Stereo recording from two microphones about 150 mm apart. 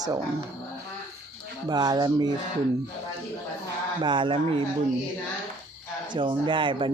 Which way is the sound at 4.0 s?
30° right (ahead or behind).